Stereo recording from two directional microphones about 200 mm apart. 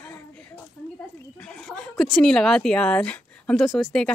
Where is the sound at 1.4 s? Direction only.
5° left (ahead or behind).